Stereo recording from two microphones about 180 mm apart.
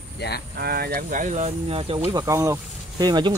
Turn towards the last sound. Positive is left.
turn(degrees=-20)  # may be behind; listen again after turning